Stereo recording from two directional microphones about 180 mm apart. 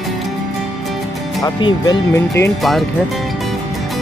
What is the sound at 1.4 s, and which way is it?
Speech, 20° left (ahead or behind).